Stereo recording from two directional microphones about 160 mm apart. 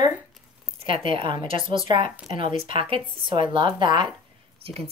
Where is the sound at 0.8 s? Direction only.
35° right (ahead or behind).